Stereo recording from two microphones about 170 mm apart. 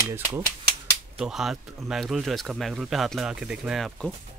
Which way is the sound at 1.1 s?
5° right (ahead or behind).